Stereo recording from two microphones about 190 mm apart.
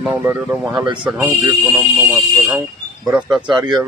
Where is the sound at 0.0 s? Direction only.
10° right (ahead or behind).